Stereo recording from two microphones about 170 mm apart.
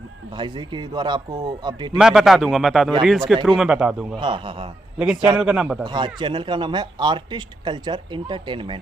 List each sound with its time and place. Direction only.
0.4 s speech: 25° right (ahead or behind)
2.0 s a man's voice: 5° right (ahead or behind)
4.2 s speech: 30° right (ahead or behind)
5.4 s a man's voice: 5° right (ahead or behind)
5.9 s speech: 25° right (ahead or behind)